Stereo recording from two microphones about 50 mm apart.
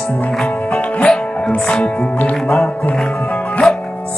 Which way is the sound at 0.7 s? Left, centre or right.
Left.